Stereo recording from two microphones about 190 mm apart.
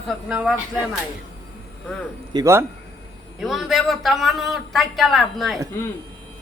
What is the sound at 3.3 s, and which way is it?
A man's voice, centre (ahead or behind).